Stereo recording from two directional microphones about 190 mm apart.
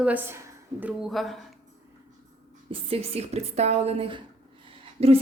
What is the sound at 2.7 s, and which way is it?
Speech, 30° right (ahead or behind).